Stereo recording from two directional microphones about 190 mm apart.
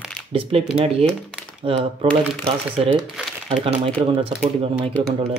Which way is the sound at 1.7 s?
30° right (ahead or behind).